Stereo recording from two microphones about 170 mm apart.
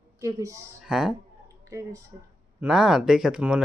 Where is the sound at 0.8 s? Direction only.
5° right (ahead or behind).